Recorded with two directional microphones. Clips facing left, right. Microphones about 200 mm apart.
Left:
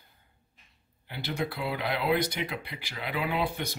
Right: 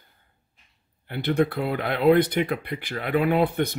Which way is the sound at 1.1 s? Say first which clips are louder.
Right 10 dB; 55° right (ahead or behind).